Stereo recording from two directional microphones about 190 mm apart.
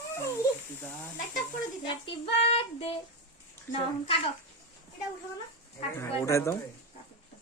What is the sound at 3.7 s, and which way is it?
Speech, 30° left (ahead or behind).